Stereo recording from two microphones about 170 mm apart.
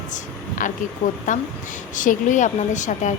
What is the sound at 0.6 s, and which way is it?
A woman's voice, 50° left (ahead or behind).